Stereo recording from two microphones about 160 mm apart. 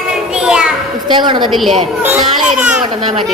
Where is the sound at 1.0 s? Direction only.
30° right (ahead or behind).